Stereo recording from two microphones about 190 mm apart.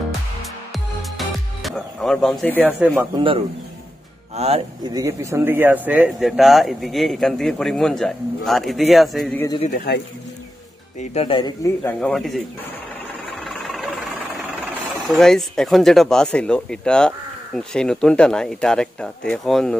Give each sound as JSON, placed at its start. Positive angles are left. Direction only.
{"t": 1.1, "sound": "music", "side_deg": 0}
{"t": 2.8, "sound": "speech", "side_deg": -10}
{"t": 3.2, "sound": "a man's voice", "side_deg": -25}
{"t": 4.8, "sound": "speech", "side_deg": -20}
{"t": 11.0, "sound": "speech", "side_deg": 30}
{"t": 11.8, "sound": "speech", "side_deg": 5}
{"t": 13.4, "sound": "vehicle", "side_deg": 0}
{"t": 15.0, "sound": "speech", "side_deg": 0}